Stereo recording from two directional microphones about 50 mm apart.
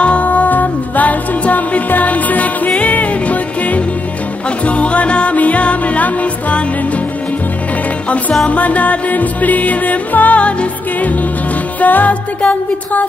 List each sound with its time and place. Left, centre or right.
0.0 s music: left
8.5 s music: left